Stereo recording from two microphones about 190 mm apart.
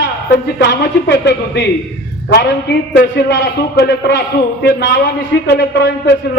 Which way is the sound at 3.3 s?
65° left (ahead or behind).